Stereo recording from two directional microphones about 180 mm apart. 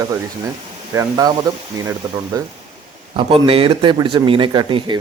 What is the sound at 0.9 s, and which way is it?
Speech, 15° right (ahead or behind).